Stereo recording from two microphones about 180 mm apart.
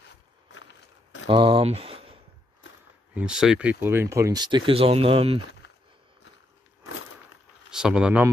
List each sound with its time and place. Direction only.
0.5 s a sound: 90° left
1.2 s speech: 30° right (ahead or behind)
3.2 s speech: 5° right (ahead or behind); by 5.4 s 30° right (ahead or behind)
7.7 s speech: 5° right (ahead or behind)